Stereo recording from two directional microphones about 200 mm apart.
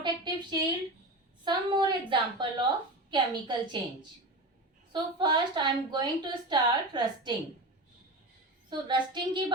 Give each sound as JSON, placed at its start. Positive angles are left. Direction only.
{"t": 0.0, "sound": "a sound", "side_deg": -20}
{"t": 1.5, "sound": "a woman's voice", "side_deg": -20}
{"t": 4.9, "sound": "a woman's voice", "side_deg": -25}
{"t": 8.7, "sound": "a woman's voice", "side_deg": -25}